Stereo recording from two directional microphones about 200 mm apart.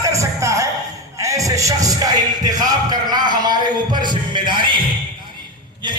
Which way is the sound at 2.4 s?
20° right (ahead or behind).